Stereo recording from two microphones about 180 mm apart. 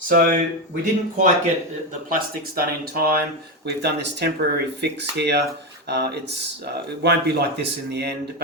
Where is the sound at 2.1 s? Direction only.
55° right (ahead or behind).